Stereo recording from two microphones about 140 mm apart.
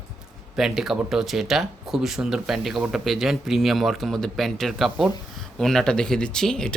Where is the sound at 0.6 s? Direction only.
5° right (ahead or behind).